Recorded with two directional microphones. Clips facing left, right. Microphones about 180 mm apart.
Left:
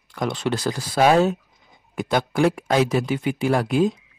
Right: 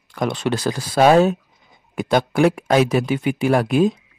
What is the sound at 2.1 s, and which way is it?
Speech, 70° right (ahead or behind).